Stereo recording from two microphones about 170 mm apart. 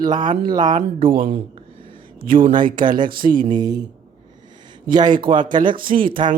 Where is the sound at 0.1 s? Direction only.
25° right (ahead or behind).